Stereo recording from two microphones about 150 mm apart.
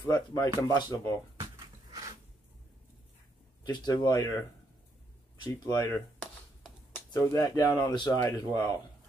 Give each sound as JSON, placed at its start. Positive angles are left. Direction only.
{"t": 0.1, "sound": "speech", "side_deg": 25}
{"t": 1.4, "sound": "a sound", "side_deg": -25}
{"t": 3.6, "sound": "speech", "side_deg": 30}
{"t": 5.4, "sound": "speech", "side_deg": 25}
{"t": 7.1, "sound": "speech", "side_deg": 20}